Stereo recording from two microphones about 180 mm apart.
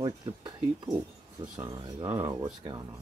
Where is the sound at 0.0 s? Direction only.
20° right (ahead or behind).